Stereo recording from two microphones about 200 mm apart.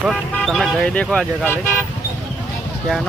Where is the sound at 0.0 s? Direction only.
Centre (ahead or behind).